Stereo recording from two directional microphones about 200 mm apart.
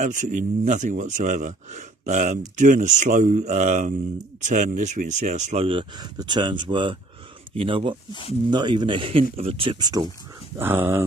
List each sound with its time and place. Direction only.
0.0 s speech: 40° right (ahead or behind)
8.1 s speech: 25° left (ahead or behind)
8.5 s speech: 20° right (ahead or behind)